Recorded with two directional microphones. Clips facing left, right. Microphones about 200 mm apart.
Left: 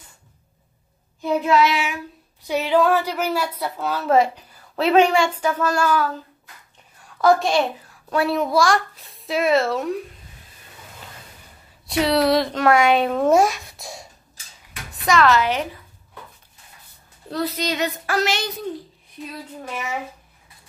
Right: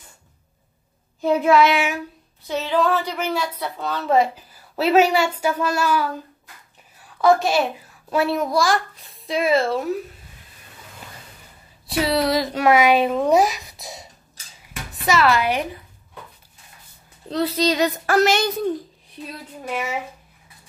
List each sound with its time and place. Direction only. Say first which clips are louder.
1.4 s child singing: right 2 dB; 55° right (ahead or behind)
2.4 s a woman's voice: left 3 dB; 15° left (ahead or behind); by 5.7 s 10° right (ahead or behind)
5.8 s child singing: left 1 dB; 10° right (ahead or behind)
7.2 s a woman's voice: even; centre (ahead or behind)
11.9 s a woman's voice: left 2 dB; centre (ahead or behind)
17.3 s speech: right 4 dB; 30° right (ahead or behind); by 18.5 s 50° right (ahead or behind)